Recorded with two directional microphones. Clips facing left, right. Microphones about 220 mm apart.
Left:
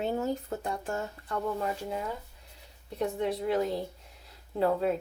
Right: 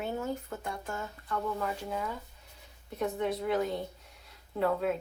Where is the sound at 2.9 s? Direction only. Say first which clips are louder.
Left 1 dB; 30° left (ahead or behind).